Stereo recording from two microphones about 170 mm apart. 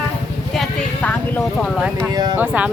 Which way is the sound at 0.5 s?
10° left (ahead or behind).